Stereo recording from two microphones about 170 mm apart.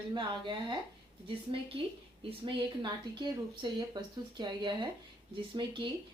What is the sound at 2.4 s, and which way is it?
Speech, 25° right (ahead or behind).